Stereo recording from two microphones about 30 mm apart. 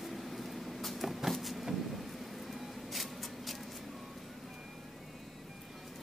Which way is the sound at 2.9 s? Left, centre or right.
Centre.